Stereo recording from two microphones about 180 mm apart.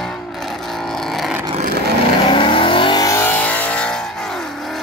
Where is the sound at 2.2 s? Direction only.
30° left (ahead or behind); by 4.8 s centre (ahead or behind).